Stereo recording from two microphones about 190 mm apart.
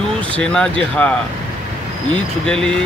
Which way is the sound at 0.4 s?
5° left (ahead or behind).